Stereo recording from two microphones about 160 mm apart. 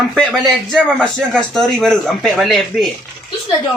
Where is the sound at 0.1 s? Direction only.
Centre (ahead or behind).